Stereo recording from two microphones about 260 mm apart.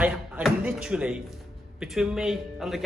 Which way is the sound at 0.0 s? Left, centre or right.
Centre.